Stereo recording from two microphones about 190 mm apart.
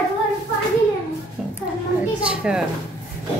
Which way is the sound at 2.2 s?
5° right (ahead or behind).